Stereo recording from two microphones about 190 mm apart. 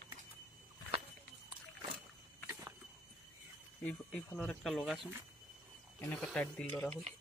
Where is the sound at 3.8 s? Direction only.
Centre (ahead or behind).